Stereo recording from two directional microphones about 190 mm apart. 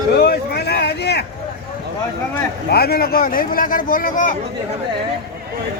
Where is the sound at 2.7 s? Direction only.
55° left (ahead or behind).